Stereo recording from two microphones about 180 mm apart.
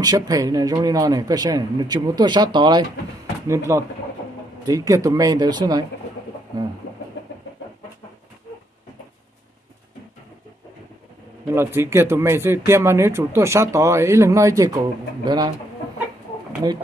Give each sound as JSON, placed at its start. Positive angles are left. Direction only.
{"t": 0.0, "sound": "speech", "side_deg": -20}
{"t": 11.4, "sound": "speech", "side_deg": -15}